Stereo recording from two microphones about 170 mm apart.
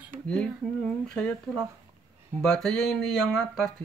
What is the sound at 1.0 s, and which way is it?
Speech, 5° left (ahead or behind).